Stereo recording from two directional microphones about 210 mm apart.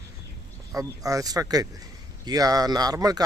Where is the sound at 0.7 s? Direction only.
15° right (ahead or behind).